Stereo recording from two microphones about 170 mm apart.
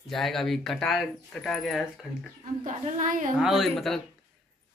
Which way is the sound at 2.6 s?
45° right (ahead or behind).